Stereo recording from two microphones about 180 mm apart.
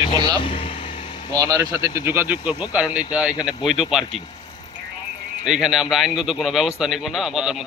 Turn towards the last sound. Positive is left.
turn(degrees=-5)  # may be behind; listen again after turning